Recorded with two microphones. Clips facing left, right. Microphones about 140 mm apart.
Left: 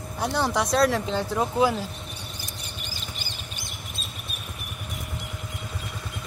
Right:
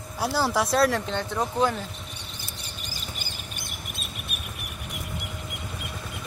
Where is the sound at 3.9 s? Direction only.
65° right (ahead or behind).